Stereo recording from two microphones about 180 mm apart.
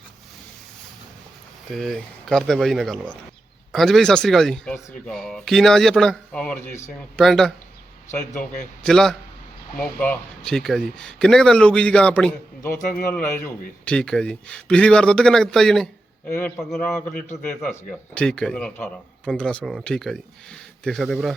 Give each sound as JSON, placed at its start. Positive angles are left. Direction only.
{"t": 1.7, "sound": "a man's voice", "side_deg": 0}
{"t": 8.8, "sound": "a man's voice", "side_deg": 5}
{"t": 12.8, "sound": "a man's voice", "side_deg": 45}
{"t": 13.1, "sound": "a man's voice", "side_deg": 10}